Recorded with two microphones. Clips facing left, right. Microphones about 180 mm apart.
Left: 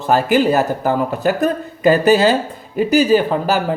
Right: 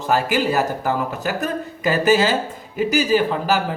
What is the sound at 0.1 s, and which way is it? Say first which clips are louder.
Speech: left 5 dB; 35° left (ahead or behind).